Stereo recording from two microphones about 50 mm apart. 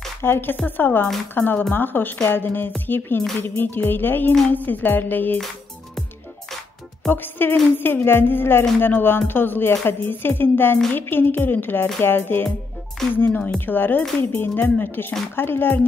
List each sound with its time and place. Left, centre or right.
0.2 s speech: left
7.1 s speech: left
13.0 s speech: centre
13.7 s speech: left